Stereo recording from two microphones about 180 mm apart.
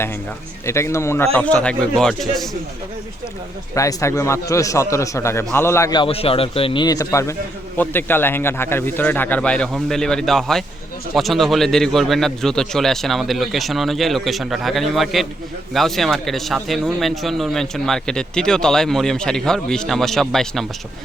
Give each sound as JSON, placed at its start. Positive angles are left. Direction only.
{"t": 0.6, "sound": "a man's voice", "side_deg": 15}
{"t": 3.8, "sound": "a man's voice", "side_deg": 15}